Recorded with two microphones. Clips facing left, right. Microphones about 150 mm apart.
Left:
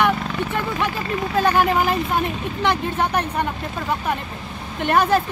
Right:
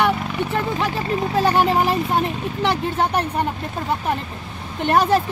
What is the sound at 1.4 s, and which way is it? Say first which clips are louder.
Speech: even; 30° right (ahead or behind).